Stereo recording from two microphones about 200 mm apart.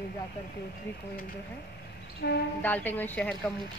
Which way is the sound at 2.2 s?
55° left (ahead or behind).